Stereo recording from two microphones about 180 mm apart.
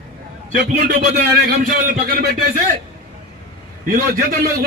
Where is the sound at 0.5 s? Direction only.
50° right (ahead or behind).